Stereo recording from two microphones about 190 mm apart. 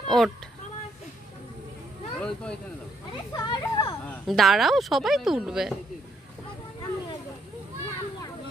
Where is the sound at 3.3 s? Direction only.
20° left (ahead or behind).